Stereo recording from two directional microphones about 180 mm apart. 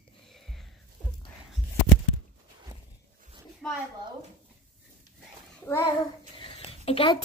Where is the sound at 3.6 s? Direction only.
5° left (ahead or behind).